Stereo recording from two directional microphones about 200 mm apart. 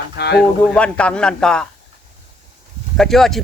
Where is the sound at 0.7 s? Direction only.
5° left (ahead or behind).